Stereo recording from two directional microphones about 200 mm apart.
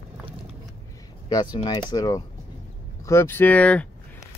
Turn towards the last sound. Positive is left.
turn(degrees=10)  # may be behind; listen again after turning